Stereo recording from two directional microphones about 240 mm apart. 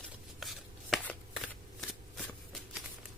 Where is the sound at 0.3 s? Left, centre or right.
Centre.